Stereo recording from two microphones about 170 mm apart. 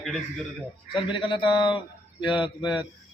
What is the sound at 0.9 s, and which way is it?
A man's voice, 30° left (ahead or behind).